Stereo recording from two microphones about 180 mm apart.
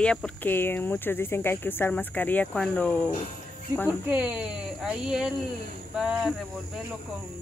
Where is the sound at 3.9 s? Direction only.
10° right (ahead or behind).